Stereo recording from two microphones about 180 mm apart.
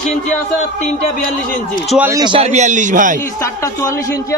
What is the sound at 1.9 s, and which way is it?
Speech, 10° right (ahead or behind).